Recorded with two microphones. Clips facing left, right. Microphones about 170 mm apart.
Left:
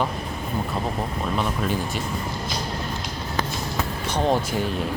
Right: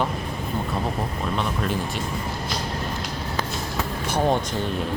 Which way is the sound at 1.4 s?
Centre (ahead or behind).